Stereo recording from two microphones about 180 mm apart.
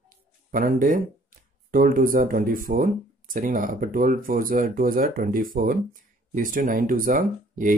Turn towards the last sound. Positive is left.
turn(degrees=-45)  # may be behind; listen again after turning